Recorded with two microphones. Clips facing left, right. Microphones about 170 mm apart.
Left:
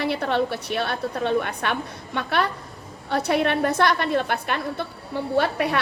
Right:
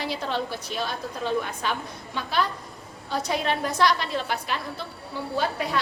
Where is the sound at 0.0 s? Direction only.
60° left (ahead or behind).